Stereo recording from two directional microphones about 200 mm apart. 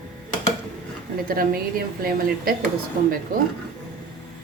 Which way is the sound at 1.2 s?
45° right (ahead or behind).